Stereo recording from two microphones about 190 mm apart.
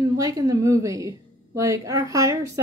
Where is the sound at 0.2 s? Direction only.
20° right (ahead or behind).